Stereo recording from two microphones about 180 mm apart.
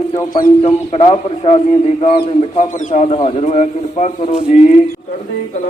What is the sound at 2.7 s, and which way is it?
A man's voice, 45° left (ahead or behind).